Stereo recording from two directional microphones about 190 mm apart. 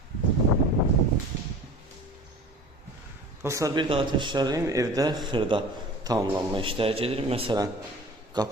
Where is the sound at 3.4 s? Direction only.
15° right (ahead or behind).